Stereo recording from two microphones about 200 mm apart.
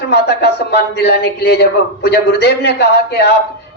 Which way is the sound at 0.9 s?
55° left (ahead or behind).